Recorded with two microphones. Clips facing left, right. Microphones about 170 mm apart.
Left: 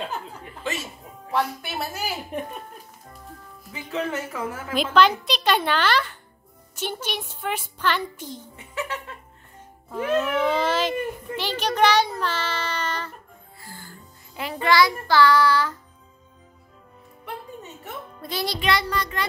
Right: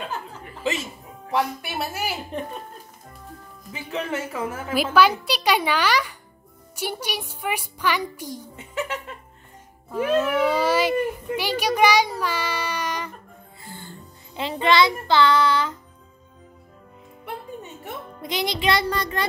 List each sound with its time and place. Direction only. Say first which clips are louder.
1.3 s a child's voice: right 1 dB; 10° right (ahead or behind)
2.3 s speech: left 2 dB; 10° left (ahead or behind)
3.7 s a child's voice: even; 15° right (ahead or behind)
9.9 s speech: right 2 dB; 10° right (ahead or behind)
11.3 s child singing: right 2 dB; 10° right (ahead or behind)
13.7 s music: right 4 dB; 25° right (ahead or behind)
18.2 s child singing: right 2 dB; 20° right (ahead or behind)